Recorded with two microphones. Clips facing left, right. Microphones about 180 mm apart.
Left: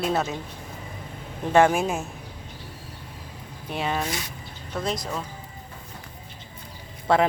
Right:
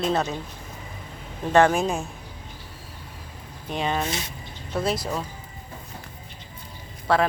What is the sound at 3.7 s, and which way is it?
Speech, 5° left (ahead or behind).